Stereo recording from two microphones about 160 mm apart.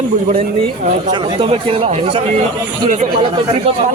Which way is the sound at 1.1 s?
30° right (ahead or behind).